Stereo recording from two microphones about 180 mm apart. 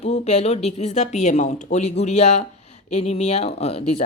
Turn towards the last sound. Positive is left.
turn(degrees=35)  # may be behind; listen again after turning